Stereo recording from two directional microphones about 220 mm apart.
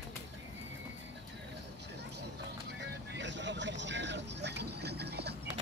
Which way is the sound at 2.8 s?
55° right (ahead or behind).